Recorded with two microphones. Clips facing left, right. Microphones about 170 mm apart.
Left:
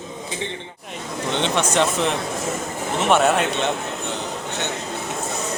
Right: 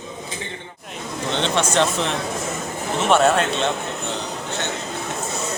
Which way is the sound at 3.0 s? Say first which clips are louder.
Right 1 dB; 15° left (ahead or behind).